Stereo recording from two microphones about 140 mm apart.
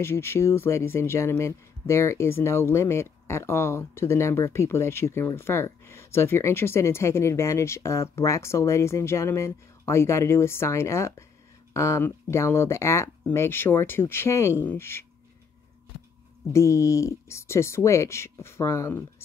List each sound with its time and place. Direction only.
0.0 s speech: 15° left (ahead or behind)
16.5 s speech: 20° left (ahead or behind)